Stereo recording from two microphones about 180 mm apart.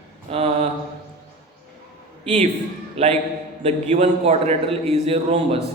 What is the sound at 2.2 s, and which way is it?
A man's voice, 40° right (ahead or behind).